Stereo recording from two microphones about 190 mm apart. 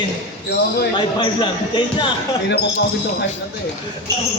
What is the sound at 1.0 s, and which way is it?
Speech, 25° left (ahead or behind).